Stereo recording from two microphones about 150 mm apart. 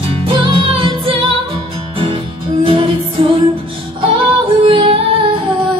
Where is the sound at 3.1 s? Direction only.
40° right (ahead or behind).